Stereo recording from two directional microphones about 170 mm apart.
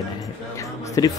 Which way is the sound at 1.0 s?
20° left (ahead or behind).